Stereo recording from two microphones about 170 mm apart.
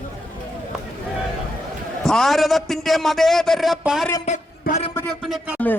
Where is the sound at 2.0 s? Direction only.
Centre (ahead or behind).